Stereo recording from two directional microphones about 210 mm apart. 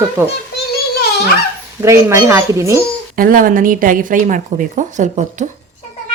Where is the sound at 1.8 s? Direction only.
15° right (ahead or behind).